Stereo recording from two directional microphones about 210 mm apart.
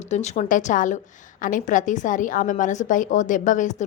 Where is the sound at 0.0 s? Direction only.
35° left (ahead or behind).